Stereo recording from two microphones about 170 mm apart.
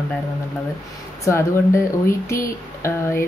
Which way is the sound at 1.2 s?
15° left (ahead or behind).